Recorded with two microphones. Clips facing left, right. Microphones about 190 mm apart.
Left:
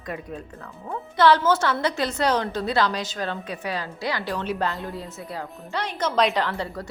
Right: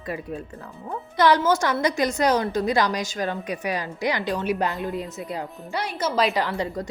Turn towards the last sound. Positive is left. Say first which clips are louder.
# right 2 dB
turn(degrees=-15)  # may be behind; listen again after turning